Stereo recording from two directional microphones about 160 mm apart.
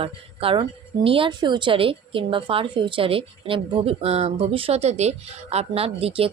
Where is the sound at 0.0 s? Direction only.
35° right (ahead or behind).